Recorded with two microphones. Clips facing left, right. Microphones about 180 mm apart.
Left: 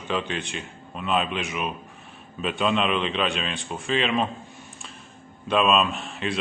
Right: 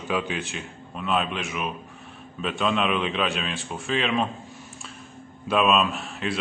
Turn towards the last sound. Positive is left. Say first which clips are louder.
# even
turn(degrees=0)  # may be behind; listen again after turning